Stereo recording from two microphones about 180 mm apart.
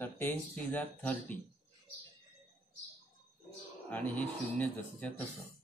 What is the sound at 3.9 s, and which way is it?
Speech, 5° left (ahead or behind).